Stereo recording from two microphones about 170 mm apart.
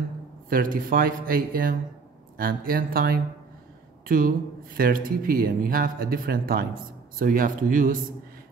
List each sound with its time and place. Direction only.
0.5 s speech: 55° right (ahead or behind)
4.7 s speech: 55° right (ahead or behind)